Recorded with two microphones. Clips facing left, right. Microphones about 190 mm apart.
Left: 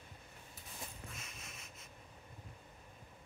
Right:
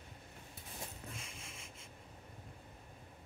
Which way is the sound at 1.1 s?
30° right (ahead or behind).